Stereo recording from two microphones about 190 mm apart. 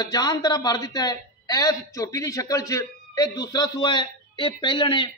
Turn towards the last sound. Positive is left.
turn(degrees=25)  # may be behind; listen again after turning